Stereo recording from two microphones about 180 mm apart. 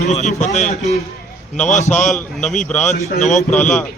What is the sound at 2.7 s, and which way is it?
A man's voice, 40° left (ahead or behind).